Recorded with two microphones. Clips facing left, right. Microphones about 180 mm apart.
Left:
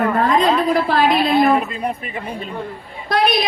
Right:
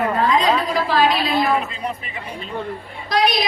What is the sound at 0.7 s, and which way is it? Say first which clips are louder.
A woman's voice: left 2 dB; 55° left (ahead or behind).